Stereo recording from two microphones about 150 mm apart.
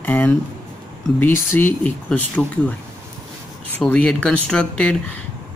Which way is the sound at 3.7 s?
10° left (ahead or behind).